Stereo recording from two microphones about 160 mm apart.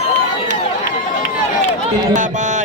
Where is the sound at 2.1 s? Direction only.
50° right (ahead or behind).